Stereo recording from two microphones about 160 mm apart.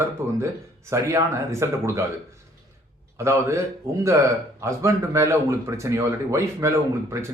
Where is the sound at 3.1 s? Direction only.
15° right (ahead or behind).